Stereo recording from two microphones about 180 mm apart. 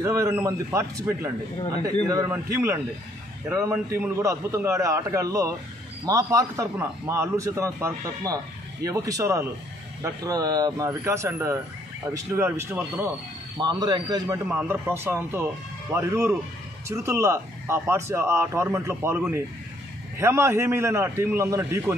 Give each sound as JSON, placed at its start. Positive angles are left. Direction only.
{"t": 0.0, "sound": "a man's voice", "side_deg": -15}
{"t": 13.6, "sound": "a man's voice", "side_deg": -25}